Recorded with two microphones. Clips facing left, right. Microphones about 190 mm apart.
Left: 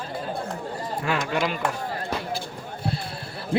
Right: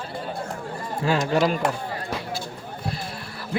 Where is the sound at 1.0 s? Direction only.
30° right (ahead or behind).